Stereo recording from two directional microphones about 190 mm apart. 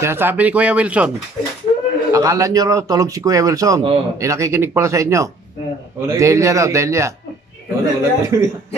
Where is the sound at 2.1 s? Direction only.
15° right (ahead or behind).